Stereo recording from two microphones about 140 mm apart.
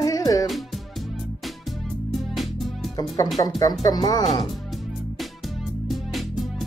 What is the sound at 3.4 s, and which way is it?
Speech, 25° left (ahead or behind).